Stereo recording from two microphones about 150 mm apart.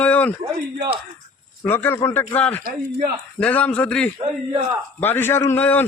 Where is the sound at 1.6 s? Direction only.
15° left (ahead or behind).